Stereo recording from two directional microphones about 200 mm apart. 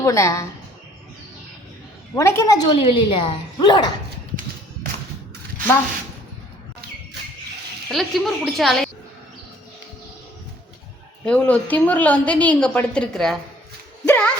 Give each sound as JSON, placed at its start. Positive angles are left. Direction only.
{"t": 0.0, "sound": "a woman's voice", "side_deg": 15}
{"t": 2.1, "sound": "a woman's voice", "side_deg": 15}
{"t": 7.9, "sound": "a woman's voice", "side_deg": 0}
{"t": 11.3, "sound": "a woman's voice", "side_deg": 5}